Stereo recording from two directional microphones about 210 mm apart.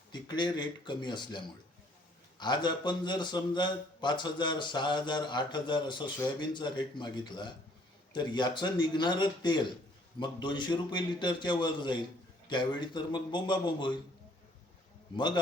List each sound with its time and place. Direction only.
0.1 s a man's voice: 20° left (ahead or behind)
2.4 s a man's voice: 20° left (ahead or behind)